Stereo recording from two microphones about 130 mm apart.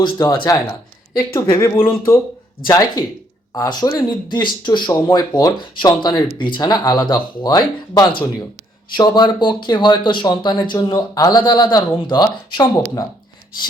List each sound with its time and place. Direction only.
0.0 s speech: 30° left (ahead or behind)
2.6 s speech: 30° left (ahead or behind)